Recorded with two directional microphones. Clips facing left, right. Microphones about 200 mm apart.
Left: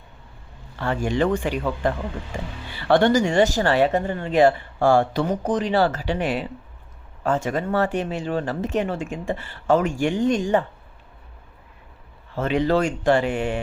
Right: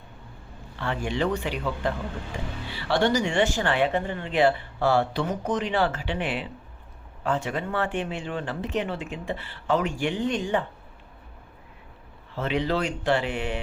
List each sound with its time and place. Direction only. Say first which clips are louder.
0.8 s speech: left 5 dB; 45° left (ahead or behind)
5.3 s speech: left 5 dB; 35° left (ahead or behind)
12.4 s speech: left 5 dB; 45° left (ahead or behind)